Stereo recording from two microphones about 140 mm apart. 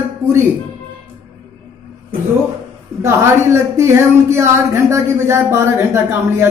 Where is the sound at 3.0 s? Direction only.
20° right (ahead or behind).